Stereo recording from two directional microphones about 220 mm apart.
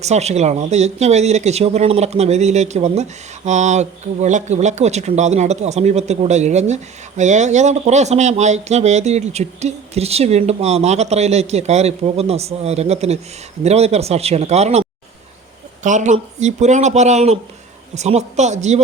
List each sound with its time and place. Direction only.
0.0 s speech: 30° right (ahead or behind)